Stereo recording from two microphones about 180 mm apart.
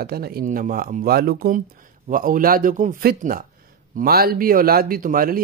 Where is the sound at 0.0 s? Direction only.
60° right (ahead or behind).